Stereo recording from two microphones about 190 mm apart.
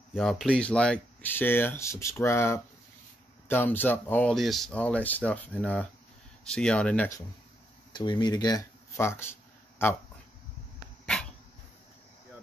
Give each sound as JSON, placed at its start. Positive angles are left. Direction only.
{"t": 0.1, "sound": "speech", "side_deg": 0}
{"t": 7.9, "sound": "speech", "side_deg": 25}
{"t": 11.1, "sound": "dog", "side_deg": 5}